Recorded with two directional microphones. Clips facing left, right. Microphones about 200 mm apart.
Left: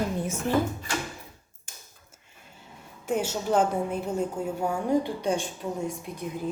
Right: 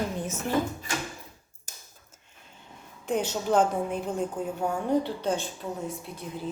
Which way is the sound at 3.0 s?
10° left (ahead or behind).